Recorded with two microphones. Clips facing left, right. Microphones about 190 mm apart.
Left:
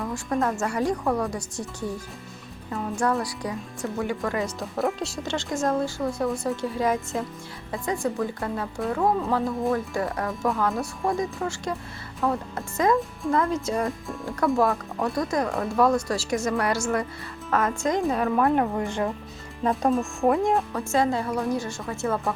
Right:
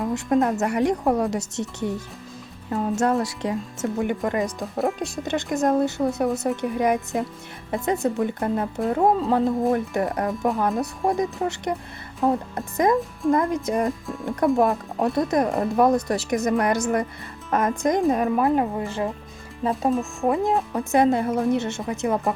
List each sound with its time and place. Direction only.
0.0 s speech: 20° right (ahead or behind)
4.6 s speech: centre (ahead or behind)
5.2 s speech: 20° right (ahead or behind)
14.7 s speech: 30° right (ahead or behind)
19.6 s speech: centre (ahead or behind)
20.7 s speech: 20° right (ahead or behind)